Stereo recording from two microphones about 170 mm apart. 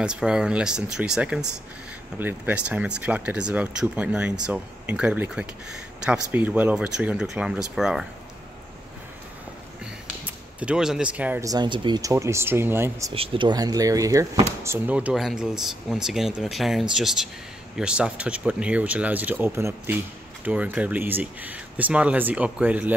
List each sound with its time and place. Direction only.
0.0 s speech: 5° right (ahead or behind)
10.2 s speech: 5° right (ahead or behind)
11.5 s speech: 25° right (ahead or behind)
13.1 s speech: 30° right (ahead or behind); by 22.9 s 10° right (ahead or behind)